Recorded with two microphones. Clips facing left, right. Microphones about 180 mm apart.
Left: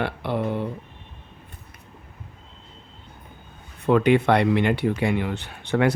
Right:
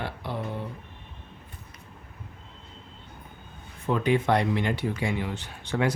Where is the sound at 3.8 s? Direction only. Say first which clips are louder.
Left 6 dB; 70° left (ahead or behind).